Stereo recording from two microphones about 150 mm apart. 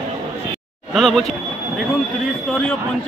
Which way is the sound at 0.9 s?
Centre (ahead or behind).